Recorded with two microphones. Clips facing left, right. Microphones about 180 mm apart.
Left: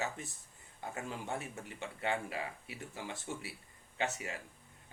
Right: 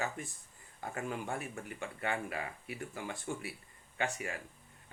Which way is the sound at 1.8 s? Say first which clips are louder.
Left 1 dB; 25° left (ahead or behind).